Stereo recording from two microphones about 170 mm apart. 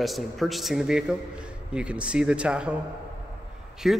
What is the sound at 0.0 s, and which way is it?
A man's voice, centre (ahead or behind).